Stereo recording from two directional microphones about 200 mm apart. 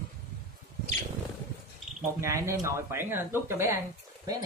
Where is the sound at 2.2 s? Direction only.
15° right (ahead or behind).